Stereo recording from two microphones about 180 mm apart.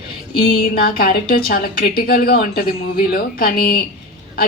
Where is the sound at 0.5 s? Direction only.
55° left (ahead or behind).